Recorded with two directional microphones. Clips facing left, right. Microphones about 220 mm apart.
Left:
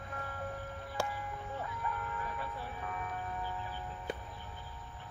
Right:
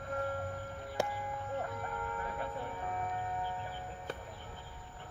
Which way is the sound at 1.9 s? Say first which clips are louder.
Left 2 dB; 45° right (ahead or behind).